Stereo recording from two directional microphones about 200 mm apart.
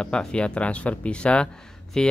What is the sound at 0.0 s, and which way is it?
Speech, 5° left (ahead or behind).